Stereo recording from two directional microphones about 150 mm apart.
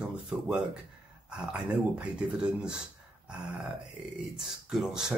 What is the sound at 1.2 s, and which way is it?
Speech, 5° right (ahead or behind).